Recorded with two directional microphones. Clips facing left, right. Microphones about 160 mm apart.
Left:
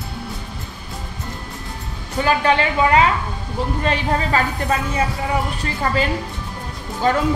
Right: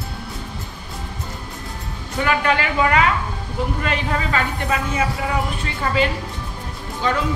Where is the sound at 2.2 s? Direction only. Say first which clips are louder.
Left 3 dB; 30° left (ahead or behind).